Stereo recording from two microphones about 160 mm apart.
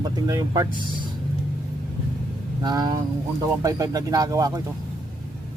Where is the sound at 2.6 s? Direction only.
25° right (ahead or behind).